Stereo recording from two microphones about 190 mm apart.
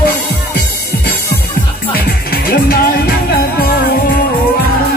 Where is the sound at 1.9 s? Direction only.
50° left (ahead or behind).